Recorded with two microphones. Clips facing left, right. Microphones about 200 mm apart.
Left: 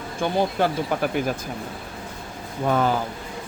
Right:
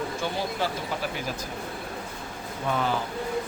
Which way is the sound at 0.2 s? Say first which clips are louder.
Left 11 dB; 55° left (ahead or behind).